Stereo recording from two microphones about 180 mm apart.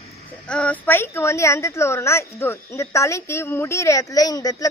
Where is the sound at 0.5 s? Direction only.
5° left (ahead or behind).